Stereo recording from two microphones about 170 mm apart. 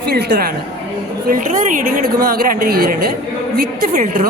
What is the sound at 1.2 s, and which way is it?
A woman's voice, 50° right (ahead or behind).